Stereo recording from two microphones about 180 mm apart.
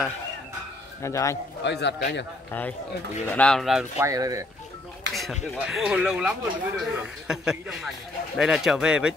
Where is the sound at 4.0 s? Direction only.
20° right (ahead or behind).